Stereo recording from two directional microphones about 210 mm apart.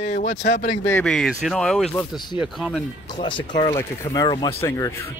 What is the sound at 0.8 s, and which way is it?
Speech, 5° left (ahead or behind).